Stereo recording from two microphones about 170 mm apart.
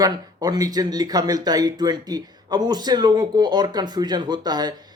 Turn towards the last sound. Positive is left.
turn(degrees=-25)  # may be behind; listen again after turning